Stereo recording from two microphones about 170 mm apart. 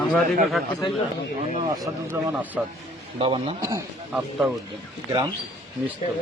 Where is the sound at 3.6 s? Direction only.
20° right (ahead or behind).